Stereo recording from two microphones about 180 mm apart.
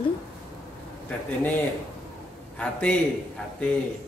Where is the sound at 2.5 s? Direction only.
5° left (ahead or behind).